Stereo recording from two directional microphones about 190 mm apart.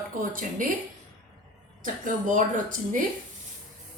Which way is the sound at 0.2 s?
45° right (ahead or behind).